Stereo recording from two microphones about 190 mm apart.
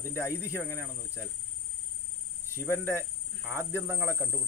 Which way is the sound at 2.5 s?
15° left (ahead or behind).